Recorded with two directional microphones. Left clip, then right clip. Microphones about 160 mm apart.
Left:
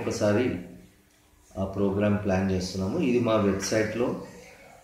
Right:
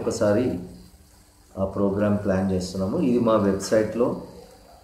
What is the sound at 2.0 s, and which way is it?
Speech, 20° right (ahead or behind).